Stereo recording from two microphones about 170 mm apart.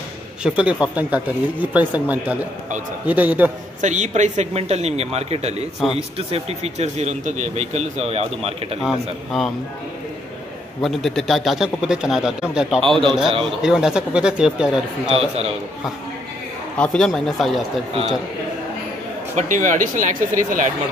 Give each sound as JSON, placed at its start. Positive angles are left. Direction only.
{"t": 0.4, "sound": "speech", "side_deg": -5}
{"t": 3.8, "sound": "a man's voice", "side_deg": -45}
{"t": 8.8, "sound": "a man's voice", "side_deg": 0}
{"t": 10.8, "sound": "a man's voice", "side_deg": 0}
{"t": 15.1, "sound": "a man's voice", "side_deg": -40}
{"t": 16.7, "sound": "a man's voice", "side_deg": 5}
{"t": 19.3, "sound": "speech", "side_deg": -45}